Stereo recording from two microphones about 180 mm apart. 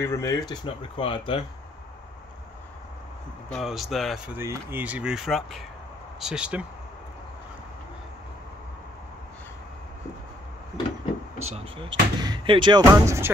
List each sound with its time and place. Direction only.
0.0 s speech: 15° left (ahead or behind)
0.5 s speech: 30° left (ahead or behind)
3.4 s speech: centre (ahead or behind)
4.4 s speech: 15° right (ahead or behind)
11.4 s speech: 30° right (ahead or behind); by 13.3 s 15° right (ahead or behind)